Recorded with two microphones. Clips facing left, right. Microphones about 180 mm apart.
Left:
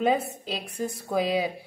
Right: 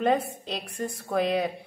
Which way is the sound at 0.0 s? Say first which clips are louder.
Even; 5° left (ahead or behind).